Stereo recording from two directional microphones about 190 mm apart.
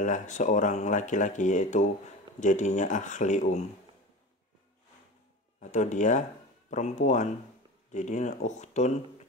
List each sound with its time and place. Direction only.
0.0 s speech: 40° left (ahead or behind)
5.6 s speech: 40° left (ahead or behind)